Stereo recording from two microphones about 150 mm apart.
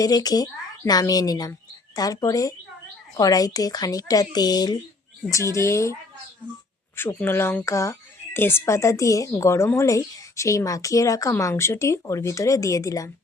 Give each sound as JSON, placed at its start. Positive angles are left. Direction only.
{"t": 0.0, "sound": "a woman's voice", "side_deg": 25}